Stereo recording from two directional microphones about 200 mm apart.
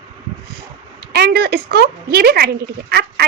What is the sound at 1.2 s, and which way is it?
Speech, 55° right (ahead or behind).